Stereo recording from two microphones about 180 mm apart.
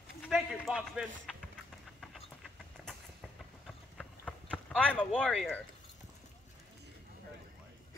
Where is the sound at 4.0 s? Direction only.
5° left (ahead or behind).